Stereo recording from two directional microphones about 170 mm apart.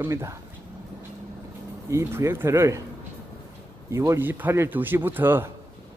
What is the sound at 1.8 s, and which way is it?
Speech, 15° right (ahead or behind).